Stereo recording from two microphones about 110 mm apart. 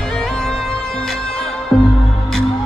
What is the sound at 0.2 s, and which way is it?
Music, 5° left (ahead or behind).